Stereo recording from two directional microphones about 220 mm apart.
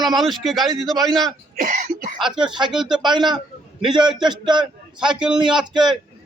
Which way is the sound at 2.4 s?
20° right (ahead or behind).